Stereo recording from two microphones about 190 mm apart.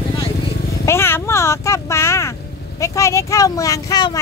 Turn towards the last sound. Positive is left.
turn(degrees=20)  # may be behind; listen again after turning